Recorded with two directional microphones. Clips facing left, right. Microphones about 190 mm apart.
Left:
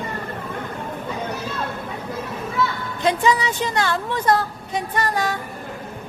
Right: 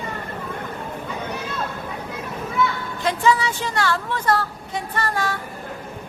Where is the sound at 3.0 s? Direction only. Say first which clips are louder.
Left 1 dB; 15° left (ahead or behind).